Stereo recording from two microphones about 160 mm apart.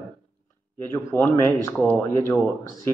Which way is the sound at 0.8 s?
15° left (ahead or behind).